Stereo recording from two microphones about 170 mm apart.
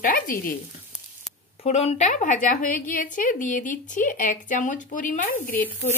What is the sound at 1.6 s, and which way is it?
A woman's voice, 40° left (ahead or behind).